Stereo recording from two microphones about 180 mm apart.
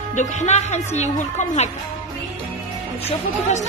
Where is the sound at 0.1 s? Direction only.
40° left (ahead or behind).